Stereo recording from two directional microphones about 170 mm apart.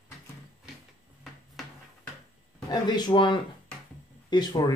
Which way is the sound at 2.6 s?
25° left (ahead or behind).